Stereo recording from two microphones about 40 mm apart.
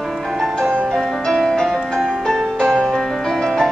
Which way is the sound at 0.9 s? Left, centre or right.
Centre.